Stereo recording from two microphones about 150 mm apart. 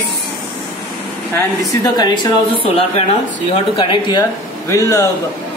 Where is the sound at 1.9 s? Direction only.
30° left (ahead or behind).